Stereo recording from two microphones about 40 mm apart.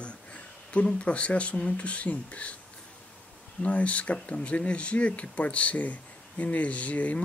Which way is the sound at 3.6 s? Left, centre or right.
Left.